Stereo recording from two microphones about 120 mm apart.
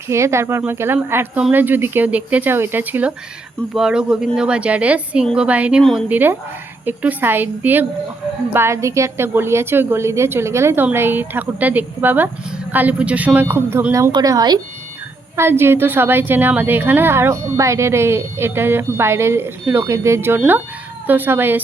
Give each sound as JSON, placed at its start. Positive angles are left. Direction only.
{"t": 0.1, "sound": "a woman's voice", "side_deg": -25}
{"t": 5.8, "sound": "speech", "side_deg": 5}
{"t": 6.1, "sound": "a woman's voice", "side_deg": -15}
{"t": 14.1, "sound": "speech", "side_deg": -35}
{"t": 15.4, "sound": "a woman's voice", "side_deg": -20}